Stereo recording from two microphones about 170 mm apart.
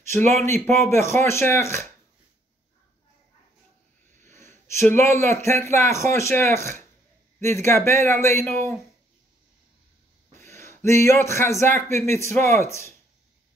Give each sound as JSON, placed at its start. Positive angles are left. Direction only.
{"t": 0.7, "sound": "a man's voice", "side_deg": 15}
{"t": 4.2, "sound": "a man's voice", "side_deg": 15}
{"t": 10.3, "sound": "speech", "side_deg": 15}